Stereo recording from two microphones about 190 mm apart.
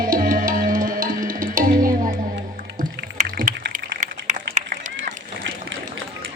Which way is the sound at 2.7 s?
50° right (ahead or behind).